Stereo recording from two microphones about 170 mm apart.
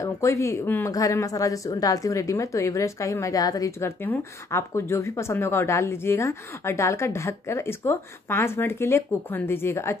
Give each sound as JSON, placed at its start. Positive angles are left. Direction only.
{"t": 0.0, "sound": "speech", "side_deg": 15}